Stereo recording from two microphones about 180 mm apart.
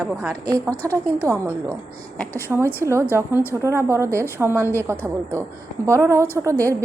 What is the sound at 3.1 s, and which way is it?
Speech, 10° right (ahead or behind).